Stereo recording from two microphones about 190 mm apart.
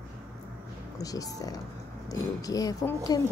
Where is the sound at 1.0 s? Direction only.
20° left (ahead or behind).